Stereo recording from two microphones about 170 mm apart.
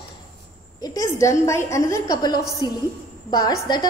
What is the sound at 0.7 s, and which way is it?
A woman's voice, 20° left (ahead or behind).